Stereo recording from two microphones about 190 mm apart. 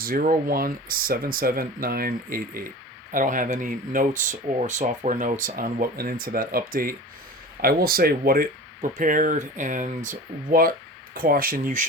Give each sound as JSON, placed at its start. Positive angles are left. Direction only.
{"t": 0.0, "sound": "speech", "side_deg": -50}